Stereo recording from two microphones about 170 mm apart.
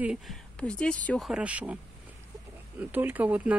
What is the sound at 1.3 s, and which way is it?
Speech, 5° right (ahead or behind).